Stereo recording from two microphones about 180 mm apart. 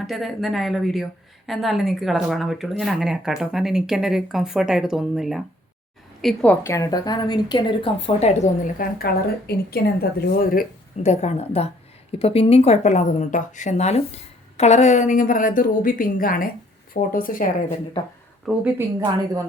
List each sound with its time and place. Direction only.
0.1 s a woman's voice: centre (ahead or behind); by 10.7 s 55° left (ahead or behind)
11.0 s a woman's voice: 35° left (ahead or behind)
18.4 s speech: 10° right (ahead or behind)